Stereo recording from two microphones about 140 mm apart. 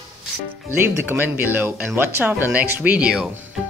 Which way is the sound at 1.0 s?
15° right (ahead or behind).